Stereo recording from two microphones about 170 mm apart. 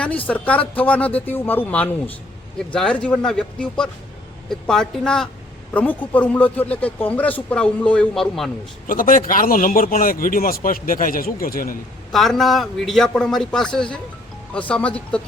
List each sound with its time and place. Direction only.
0.0 s a man's voice: 10° left (ahead or behind)
8.9 s speech: 55° left (ahead or behind)
12.1 s a man's voice: centre (ahead or behind)
14.7 s speech: 5° left (ahead or behind)